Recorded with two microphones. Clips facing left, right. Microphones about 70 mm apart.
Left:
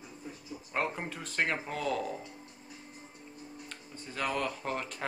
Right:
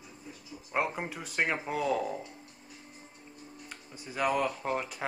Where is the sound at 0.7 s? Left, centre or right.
Centre.